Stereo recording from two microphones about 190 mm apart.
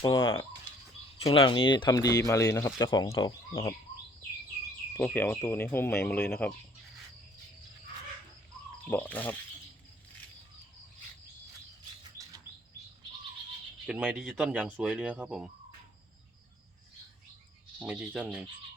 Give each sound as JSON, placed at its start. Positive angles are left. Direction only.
{"t": 0.0, "sound": "speech", "side_deg": 25}
{"t": 4.9, "sound": "speech", "side_deg": 10}
{"t": 8.9, "sound": "speech", "side_deg": 10}
{"t": 13.8, "sound": "speech", "side_deg": 0}
{"t": 17.7, "sound": "speech", "side_deg": -5}